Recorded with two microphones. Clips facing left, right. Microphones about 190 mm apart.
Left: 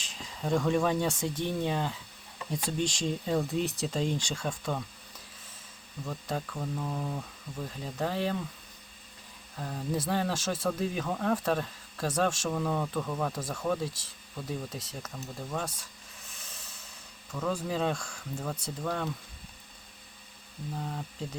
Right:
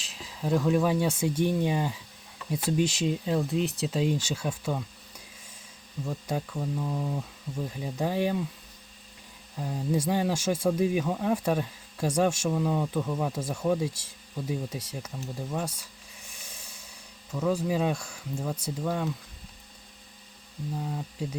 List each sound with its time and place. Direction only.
0.0 s speech: 5° right (ahead or behind)
6.1 s speech: 10° right (ahead or behind)
9.6 s speech: 10° right (ahead or behind)
20.7 s speech: 5° right (ahead or behind)